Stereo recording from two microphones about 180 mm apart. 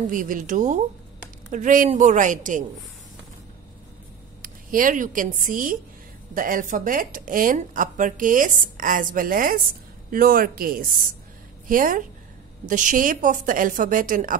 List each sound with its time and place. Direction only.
0.1 s speech: 45° right (ahead or behind)
4.4 s speech: 50° right (ahead or behind)